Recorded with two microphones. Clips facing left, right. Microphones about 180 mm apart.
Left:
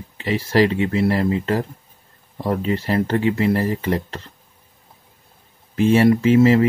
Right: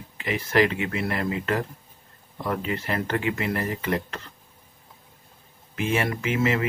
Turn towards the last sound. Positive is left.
turn(degrees=35)  # may be behind; listen again after turning